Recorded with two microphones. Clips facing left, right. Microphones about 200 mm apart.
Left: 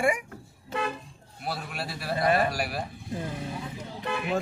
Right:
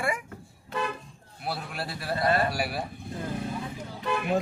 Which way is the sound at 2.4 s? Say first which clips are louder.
Even; centre (ahead or behind).